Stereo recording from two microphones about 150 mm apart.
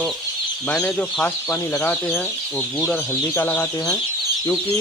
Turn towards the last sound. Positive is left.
turn(degrees=15)  # may be behind; listen again after turning